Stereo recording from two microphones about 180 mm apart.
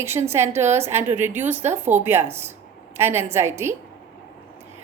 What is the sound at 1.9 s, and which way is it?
Speech, 40° right (ahead or behind).